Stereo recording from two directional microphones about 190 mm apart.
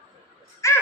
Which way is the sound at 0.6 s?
15° left (ahead or behind).